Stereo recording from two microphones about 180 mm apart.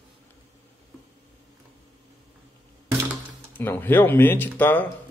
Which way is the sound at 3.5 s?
10° left (ahead or behind).